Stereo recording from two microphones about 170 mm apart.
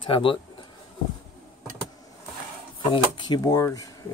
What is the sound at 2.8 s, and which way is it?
Speech, 30° left (ahead or behind).